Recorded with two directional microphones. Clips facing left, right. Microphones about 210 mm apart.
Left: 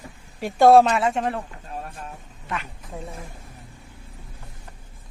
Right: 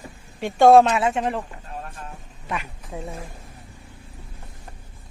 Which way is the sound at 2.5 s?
10° right (ahead or behind).